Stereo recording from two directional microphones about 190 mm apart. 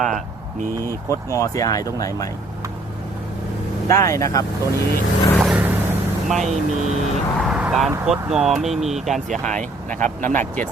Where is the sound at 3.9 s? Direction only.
15° left (ahead or behind).